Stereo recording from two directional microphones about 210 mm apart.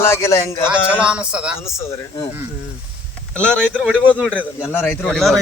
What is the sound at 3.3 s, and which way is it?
A man's voice, 5° left (ahead or behind).